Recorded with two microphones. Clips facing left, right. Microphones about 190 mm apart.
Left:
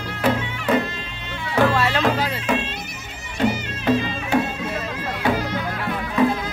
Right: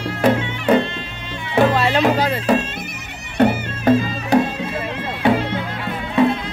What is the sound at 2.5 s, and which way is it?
Bagpipes, 35° right (ahead or behind).